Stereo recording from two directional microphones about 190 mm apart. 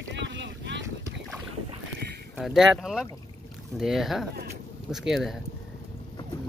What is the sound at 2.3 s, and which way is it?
Speech, centre (ahead or behind).